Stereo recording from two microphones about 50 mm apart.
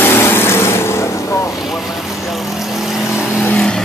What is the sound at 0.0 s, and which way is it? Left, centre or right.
Vehicle, left.